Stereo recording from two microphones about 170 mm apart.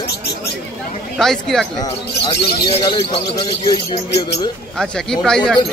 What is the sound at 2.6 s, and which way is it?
Speech, 30° left (ahead or behind).